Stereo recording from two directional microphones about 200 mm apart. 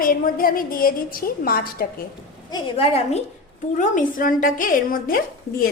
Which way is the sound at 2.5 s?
30° left (ahead or behind).